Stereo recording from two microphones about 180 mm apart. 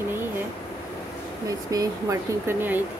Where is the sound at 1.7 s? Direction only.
20° right (ahead or behind).